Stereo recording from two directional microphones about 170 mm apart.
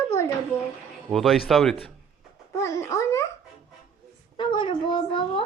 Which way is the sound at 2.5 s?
20° left (ahead or behind).